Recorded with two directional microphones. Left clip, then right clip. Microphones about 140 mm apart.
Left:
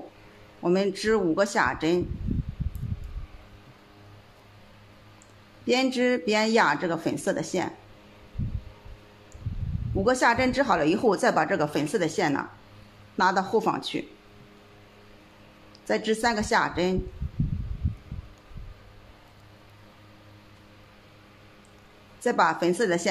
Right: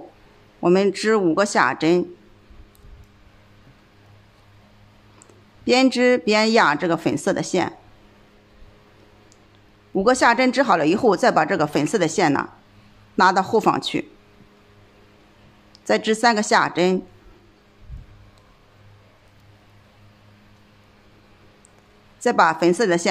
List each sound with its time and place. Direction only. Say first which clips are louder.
0.6 s speech: right 7 dB; 45° right (ahead or behind)
5.7 s speech: right 7 dB; 40° right (ahead or behind)
9.9 s speech: right 6 dB; 40° right (ahead or behind)
15.8 s speech: right 7 dB; 45° right (ahead or behind)
22.2 s speech: right 6 dB; 40° right (ahead or behind)